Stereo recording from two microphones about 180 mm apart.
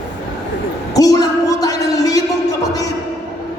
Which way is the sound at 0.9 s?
20° left (ahead or behind).